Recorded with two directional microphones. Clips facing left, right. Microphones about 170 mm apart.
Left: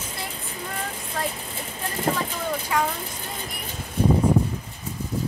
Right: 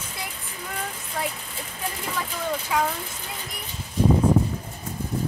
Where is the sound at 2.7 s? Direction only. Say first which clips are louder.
Even; 5° right (ahead or behind).